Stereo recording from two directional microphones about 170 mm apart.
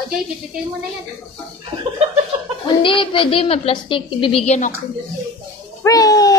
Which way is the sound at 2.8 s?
30° left (ahead or behind).